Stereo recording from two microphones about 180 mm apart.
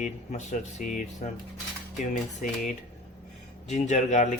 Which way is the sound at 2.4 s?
45° left (ahead or behind).